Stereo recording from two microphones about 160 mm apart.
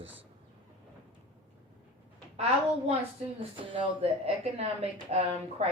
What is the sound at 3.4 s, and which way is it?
Speech, 35° right (ahead or behind).